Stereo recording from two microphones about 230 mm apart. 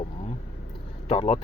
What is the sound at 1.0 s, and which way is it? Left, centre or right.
Speech, left.